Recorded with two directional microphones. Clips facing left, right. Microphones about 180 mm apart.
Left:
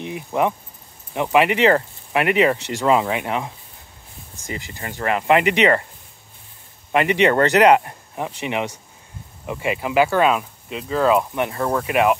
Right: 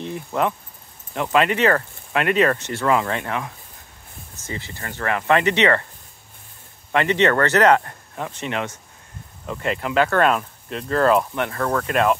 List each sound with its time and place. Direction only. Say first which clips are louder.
0.0 s speech: left 2 dB; 15° left (ahead or behind)
6.9 s speech: left 1 dB; 15° left (ahead or behind)
11.5 s speech: left 1 dB; 20° left (ahead or behind)